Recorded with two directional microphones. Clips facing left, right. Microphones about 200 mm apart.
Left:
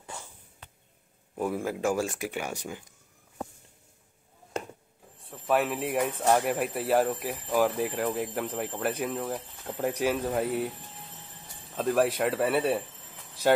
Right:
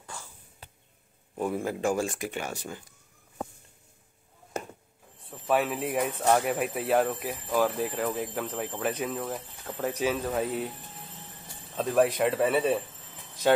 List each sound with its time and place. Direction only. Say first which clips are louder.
0.0 s a sound: left 1 dB; 20° left (ahead or behind)
1.3 s speech: even; 5° left (ahead or behind)
5.2 s speech: even; centre (ahead or behind)
11.7 s speech: right 1 dB; centre (ahead or behind)